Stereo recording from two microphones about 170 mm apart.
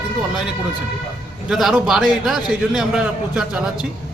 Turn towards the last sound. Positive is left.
turn(degrees=-5)  # may be behind; listen again after turning